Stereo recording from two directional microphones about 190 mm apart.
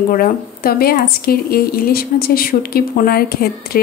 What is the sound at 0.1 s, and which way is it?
Speech, 50° left (ahead or behind).